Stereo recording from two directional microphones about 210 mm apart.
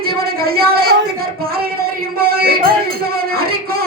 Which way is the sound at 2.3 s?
45° right (ahead or behind).